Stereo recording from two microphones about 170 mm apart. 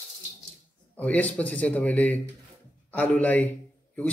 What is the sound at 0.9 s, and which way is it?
Speech, 10° left (ahead or behind).